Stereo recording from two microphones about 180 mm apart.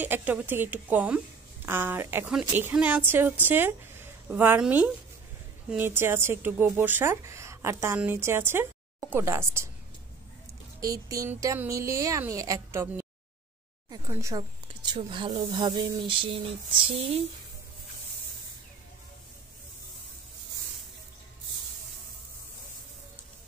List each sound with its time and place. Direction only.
0.0 s speech: 10° right (ahead or behind)
10.8 s speech: 20° right (ahead or behind)
14.9 s speech: 25° right (ahead or behind)